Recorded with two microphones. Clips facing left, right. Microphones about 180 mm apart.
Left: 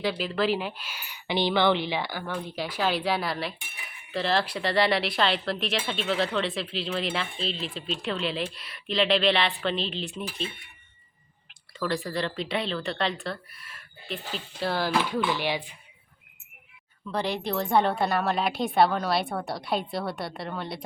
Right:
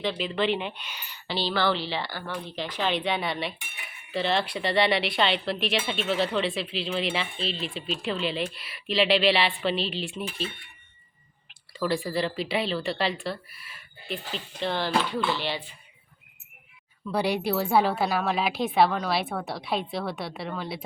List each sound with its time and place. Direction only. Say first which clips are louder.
0.0 s speech: even; 5° left (ahead or behind)
11.8 s speech: right 2 dB; 5° right (ahead or behind); by 15.7 s 10° left (ahead or behind)
17.1 s speech: right 3 dB; 10° right (ahead or behind)